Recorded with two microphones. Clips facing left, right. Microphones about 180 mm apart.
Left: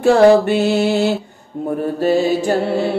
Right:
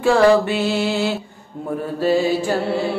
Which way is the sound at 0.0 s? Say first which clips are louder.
Left 4 dB; 45° left (ahead or behind).